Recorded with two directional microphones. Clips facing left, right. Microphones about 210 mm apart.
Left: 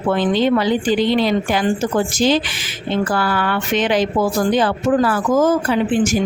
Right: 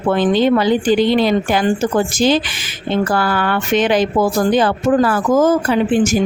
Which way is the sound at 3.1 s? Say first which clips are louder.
Right 2 dB; 50° right (ahead or behind).